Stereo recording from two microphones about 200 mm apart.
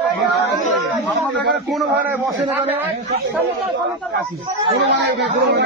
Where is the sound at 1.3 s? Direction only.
55° right (ahead or behind).